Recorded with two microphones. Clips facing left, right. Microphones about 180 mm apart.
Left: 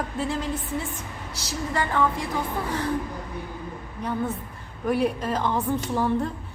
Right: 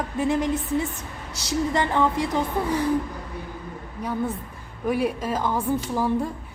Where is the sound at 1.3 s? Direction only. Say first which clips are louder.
Right 5 dB; 20° right (ahead or behind).